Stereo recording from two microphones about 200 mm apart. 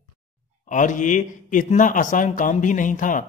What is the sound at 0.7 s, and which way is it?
A man's voice, 40° left (ahead or behind).